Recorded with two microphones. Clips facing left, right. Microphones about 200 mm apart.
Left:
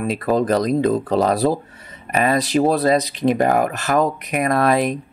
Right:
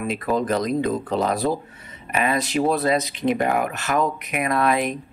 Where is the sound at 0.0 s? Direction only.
35° left (ahead or behind).